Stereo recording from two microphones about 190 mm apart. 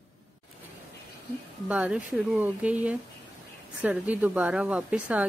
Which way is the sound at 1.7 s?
5° right (ahead or behind).